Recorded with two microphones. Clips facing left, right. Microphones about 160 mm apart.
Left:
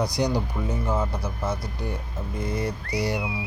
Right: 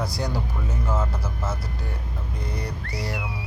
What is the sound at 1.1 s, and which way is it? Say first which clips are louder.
Speech: left 2 dB; 5° right (ahead or behind).